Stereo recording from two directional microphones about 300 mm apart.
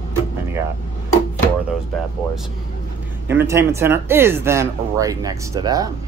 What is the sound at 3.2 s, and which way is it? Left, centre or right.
Speech, centre.